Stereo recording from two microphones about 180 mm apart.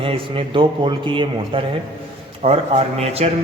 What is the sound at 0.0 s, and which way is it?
A man's voice, 30° right (ahead or behind).